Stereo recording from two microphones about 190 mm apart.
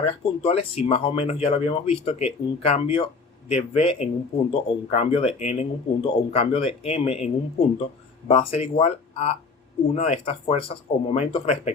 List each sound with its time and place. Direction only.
0.0 s speech: 30° left (ahead or behind)